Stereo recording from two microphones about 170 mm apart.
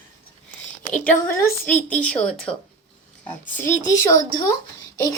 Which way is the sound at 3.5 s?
15° left (ahead or behind).